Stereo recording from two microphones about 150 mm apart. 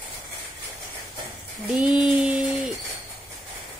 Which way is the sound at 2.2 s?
10° right (ahead or behind).